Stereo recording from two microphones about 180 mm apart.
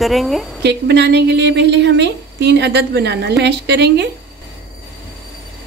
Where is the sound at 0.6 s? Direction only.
70° right (ahead or behind).